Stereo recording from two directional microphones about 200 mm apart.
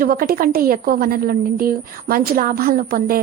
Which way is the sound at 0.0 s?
45° right (ahead or behind).